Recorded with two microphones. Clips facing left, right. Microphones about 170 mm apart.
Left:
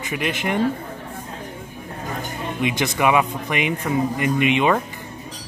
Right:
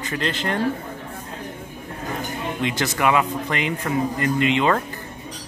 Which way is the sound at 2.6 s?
15° left (ahead or behind).